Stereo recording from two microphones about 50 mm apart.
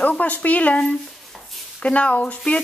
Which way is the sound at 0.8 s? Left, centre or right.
Centre.